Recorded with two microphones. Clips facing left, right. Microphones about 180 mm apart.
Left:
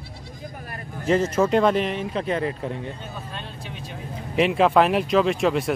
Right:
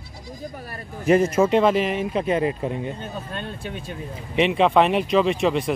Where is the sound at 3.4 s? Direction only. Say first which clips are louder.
Right 5 dB; 50° right (ahead or behind).